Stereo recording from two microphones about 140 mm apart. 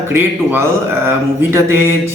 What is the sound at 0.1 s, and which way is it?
Speech, 15° right (ahead or behind).